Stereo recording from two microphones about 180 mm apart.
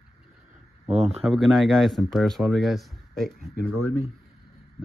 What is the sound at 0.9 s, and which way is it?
Speech, 35° right (ahead or behind).